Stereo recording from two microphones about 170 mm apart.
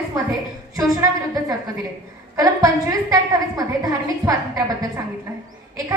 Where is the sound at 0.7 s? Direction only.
20° right (ahead or behind).